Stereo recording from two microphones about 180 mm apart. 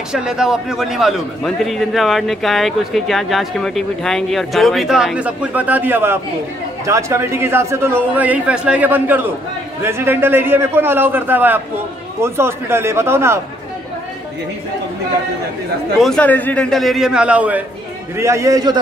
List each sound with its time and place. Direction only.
0.1 s a man's voice: 5° right (ahead or behind)
16.0 s a man's voice: 5° left (ahead or behind); by 18.8 s 20° right (ahead or behind)